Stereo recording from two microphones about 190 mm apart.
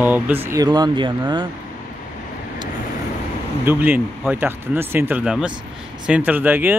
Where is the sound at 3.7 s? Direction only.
10° right (ahead or behind).